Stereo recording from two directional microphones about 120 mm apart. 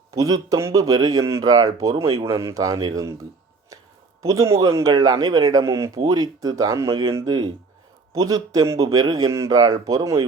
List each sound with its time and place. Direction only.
0.1 s speech: 30° right (ahead or behind)
4.2 s speech: 25° right (ahead or behind)